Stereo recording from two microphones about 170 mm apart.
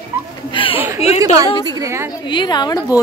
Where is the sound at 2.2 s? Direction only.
25° left (ahead or behind).